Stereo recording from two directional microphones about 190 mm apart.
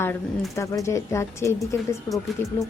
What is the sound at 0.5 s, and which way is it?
A woman's voice, 15° left (ahead or behind).